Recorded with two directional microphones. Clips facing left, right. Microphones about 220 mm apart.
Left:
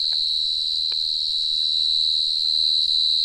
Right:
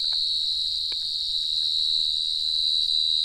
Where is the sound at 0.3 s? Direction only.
30° right (ahead or behind).